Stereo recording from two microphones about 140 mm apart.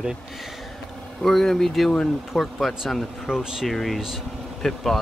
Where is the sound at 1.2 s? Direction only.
Centre (ahead or behind).